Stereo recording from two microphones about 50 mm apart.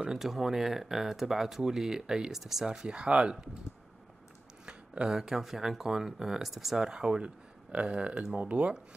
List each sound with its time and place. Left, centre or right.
0.2 s speech: centre
4.6 s speech: centre
6.8 s speech: centre